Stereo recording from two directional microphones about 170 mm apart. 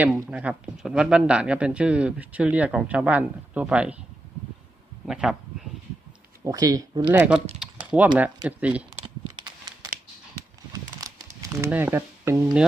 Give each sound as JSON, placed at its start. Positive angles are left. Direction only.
{"t": 0.3, "sound": "speech", "side_deg": -5}
{"t": 5.0, "sound": "speech", "side_deg": -5}
{"t": 6.4, "sound": "speech", "side_deg": -20}
{"t": 10.7, "sound": "a sound", "side_deg": -20}
{"t": 11.7, "sound": "speech", "side_deg": -15}